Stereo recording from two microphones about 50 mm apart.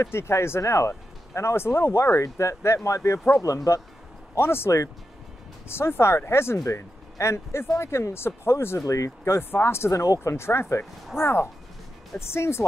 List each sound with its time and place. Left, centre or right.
0.0 s speech: left
4.4 s speech: left
9.4 s speech: left